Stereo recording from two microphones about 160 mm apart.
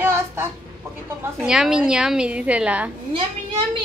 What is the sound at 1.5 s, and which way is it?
Speech, 5° right (ahead or behind).